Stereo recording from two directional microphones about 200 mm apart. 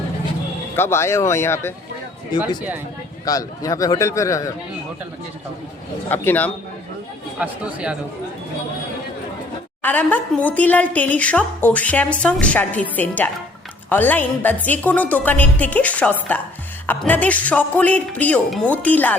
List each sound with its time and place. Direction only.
0.8 s a woman's voice: 15° left (ahead or behind)
3.2 s a woman's voice: 15° left (ahead or behind)
6.1 s a woman's voice: 10° left (ahead or behind)
7.3 s speech: 5° right (ahead or behind)
9.8 s a woman's voice: 10° left (ahead or behind)